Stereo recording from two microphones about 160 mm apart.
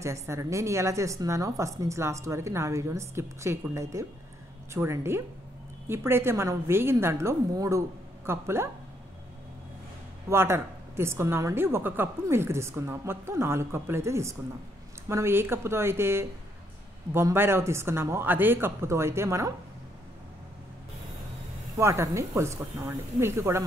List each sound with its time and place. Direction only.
0.0 s a woman's voice: 20° right (ahead or behind)
10.3 s a woman's voice: 15° right (ahead or behind)
21.7 s a woman's voice: 20° right (ahead or behind)